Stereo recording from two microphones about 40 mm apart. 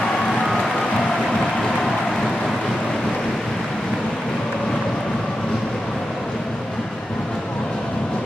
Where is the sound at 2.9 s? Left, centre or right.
Centre.